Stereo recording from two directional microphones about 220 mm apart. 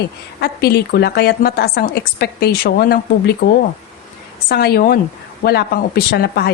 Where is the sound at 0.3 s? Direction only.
45° left (ahead or behind).